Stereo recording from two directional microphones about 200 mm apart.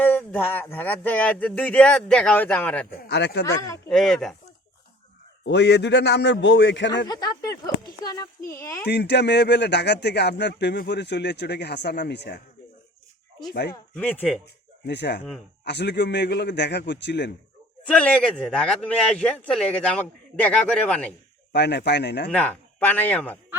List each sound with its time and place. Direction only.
0.0 s speech: 10° left (ahead or behind)
3.0 s speech: 55° left (ahead or behind)
3.4 s speech: 15° left (ahead or behind)
3.8 s a man's voice: centre (ahead or behind)
5.5 s speech: 55° left (ahead or behind)
8.0 s speech: 20° left (ahead or behind)
8.9 s speech: 55° left (ahead or behind)
13.5 s speech: 55° left (ahead or behind)
13.9 s a man's voice: 5° left (ahead or behind)
14.4 s speech: 55° left (ahead or behind)
17.8 s a man's voice: 5° left (ahead or behind)
21.5 s speech: 55° left (ahead or behind)
22.3 s speech: 10° left (ahead or behind)